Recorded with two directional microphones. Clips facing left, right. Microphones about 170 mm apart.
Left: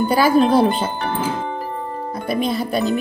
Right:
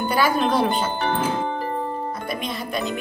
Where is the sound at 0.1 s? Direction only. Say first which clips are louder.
Left 6 dB; 35° left (ahead or behind).